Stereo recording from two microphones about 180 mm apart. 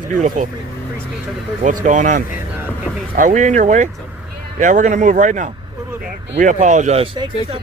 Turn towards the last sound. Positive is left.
turn(degrees=-30)  # may be behind; listen again after turning